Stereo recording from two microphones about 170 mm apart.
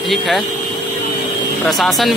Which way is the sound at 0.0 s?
Centre (ahead or behind).